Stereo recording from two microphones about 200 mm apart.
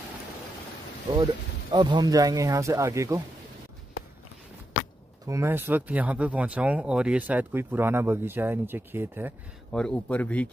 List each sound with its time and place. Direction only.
1.1 s speech: 20° right (ahead or behind)
5.2 s speech: 15° right (ahead or behind)
9.7 s speech: 5° left (ahead or behind)